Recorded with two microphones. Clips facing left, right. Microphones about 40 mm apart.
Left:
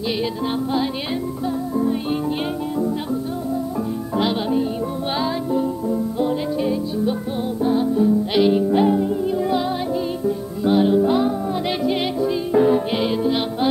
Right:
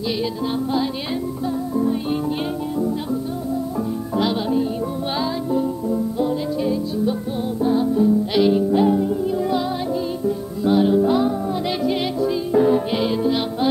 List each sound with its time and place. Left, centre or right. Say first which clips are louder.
4.1 s music: even; centre